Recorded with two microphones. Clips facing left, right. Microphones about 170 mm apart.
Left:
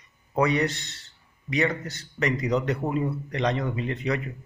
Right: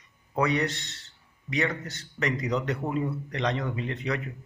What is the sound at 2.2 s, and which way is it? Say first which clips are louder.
A man's voice: left 3 dB; 10° left (ahead or behind).